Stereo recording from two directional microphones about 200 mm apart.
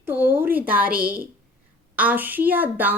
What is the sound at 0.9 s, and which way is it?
Speech, 45° right (ahead or behind).